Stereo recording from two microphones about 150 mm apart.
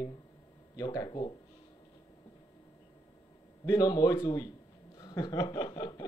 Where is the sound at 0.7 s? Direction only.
25° left (ahead or behind).